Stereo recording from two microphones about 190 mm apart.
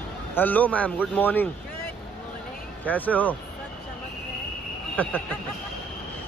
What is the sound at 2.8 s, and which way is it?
Speech, 10° left (ahead or behind).